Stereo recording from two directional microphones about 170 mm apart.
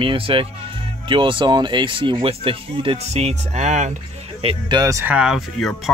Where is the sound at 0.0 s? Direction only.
30° right (ahead or behind).